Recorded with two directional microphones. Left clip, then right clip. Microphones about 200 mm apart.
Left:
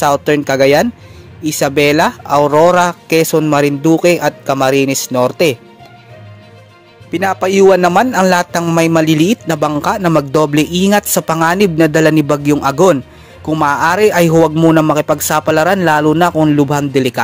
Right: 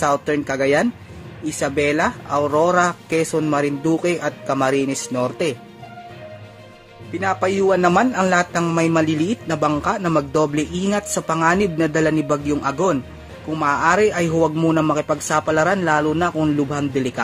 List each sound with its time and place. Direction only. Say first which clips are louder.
0.0 s speech: left 7 dB; 40° left (ahead or behind)
7.1 s speech: left 6 dB; 40° left (ahead or behind)